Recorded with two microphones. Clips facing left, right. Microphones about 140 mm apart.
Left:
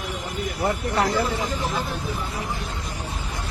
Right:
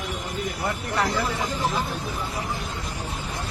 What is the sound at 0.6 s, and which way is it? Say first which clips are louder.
Speech: left 4 dB; 25° left (ahead or behind).